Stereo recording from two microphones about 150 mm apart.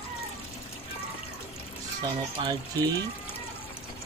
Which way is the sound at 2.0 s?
30° right (ahead or behind).